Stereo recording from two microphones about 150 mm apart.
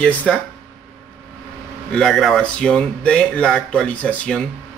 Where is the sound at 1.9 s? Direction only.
5° left (ahead or behind).